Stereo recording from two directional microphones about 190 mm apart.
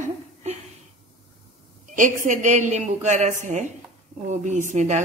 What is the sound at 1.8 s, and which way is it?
Speech, 40° right (ahead or behind).